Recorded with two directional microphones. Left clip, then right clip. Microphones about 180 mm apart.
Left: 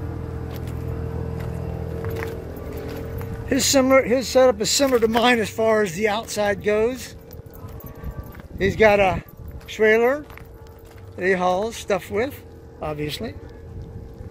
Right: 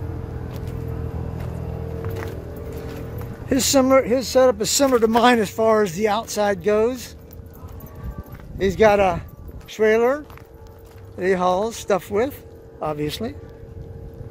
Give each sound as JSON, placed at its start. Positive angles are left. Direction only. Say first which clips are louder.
{"t": 3.4, "sound": "speech", "louder": "right 1 dB", "side_deg": -20}
{"t": 5.1, "sound": "speech", "louder": "right 2 dB", "side_deg": -35}
{"t": 8.5, "sound": "a man's voice", "louder": "even", "side_deg": -20}